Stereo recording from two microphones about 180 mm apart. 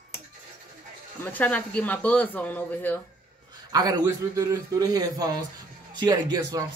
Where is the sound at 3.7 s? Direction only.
20° right (ahead or behind).